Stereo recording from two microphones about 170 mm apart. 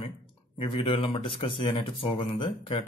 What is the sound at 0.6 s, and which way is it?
Speech, 30° left (ahead or behind).